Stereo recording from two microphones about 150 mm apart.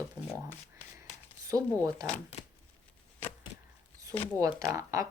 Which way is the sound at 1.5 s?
25° right (ahead or behind).